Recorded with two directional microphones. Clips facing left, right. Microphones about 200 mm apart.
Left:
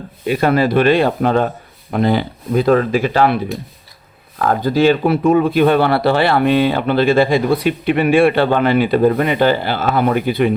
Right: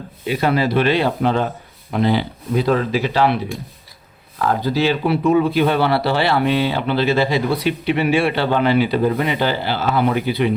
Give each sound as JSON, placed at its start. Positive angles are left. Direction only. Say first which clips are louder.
{"t": 0.3, "sound": "speech", "louder": "left 4 dB", "side_deg": 50}
{"t": 4.4, "sound": "speech", "louder": "left 4 dB", "side_deg": 50}